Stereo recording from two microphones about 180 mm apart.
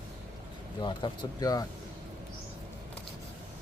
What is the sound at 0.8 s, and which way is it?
Speech, 25° left (ahead or behind).